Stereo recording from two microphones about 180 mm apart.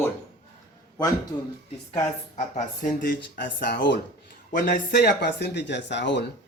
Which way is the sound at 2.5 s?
45° left (ahead or behind).